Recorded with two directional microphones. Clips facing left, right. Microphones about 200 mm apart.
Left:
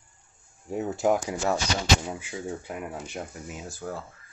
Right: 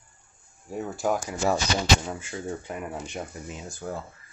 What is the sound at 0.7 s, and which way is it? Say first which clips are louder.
Speech: left 3 dB; 25° left (ahead or behind).